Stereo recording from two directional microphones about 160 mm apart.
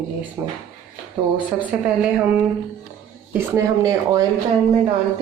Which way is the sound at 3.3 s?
20° right (ahead or behind).